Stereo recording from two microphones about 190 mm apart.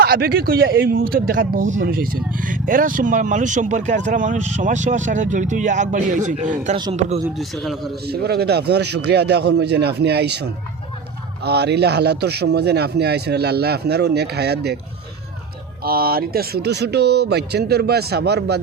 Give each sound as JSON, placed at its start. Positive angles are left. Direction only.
{"t": 0.0, "sound": "speech", "side_deg": -50}
{"t": 7.3, "sound": "a man's voice", "side_deg": 0}
{"t": 8.0, "sound": "speech", "side_deg": -55}
{"t": 15.8, "sound": "speech", "side_deg": -50}